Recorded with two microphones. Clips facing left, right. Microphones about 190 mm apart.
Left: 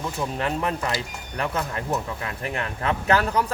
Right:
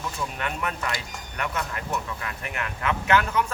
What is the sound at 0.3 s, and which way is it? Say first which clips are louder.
Speech: left 5 dB; 30° left (ahead or behind).